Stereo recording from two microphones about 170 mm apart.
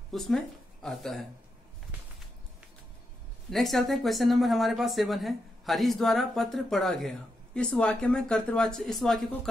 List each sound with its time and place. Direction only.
0.1 s speech: centre (ahead or behind)
3.4 s speech: centre (ahead or behind)